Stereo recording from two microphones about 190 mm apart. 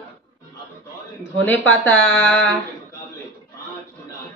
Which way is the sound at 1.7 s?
10° left (ahead or behind).